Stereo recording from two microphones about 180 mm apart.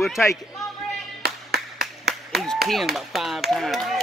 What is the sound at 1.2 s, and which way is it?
Clapping, 60° right (ahead or behind).